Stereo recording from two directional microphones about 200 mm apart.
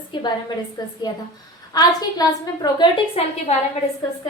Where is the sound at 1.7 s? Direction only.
20° left (ahead or behind).